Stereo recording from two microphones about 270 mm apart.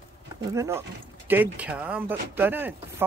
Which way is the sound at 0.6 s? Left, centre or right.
Centre.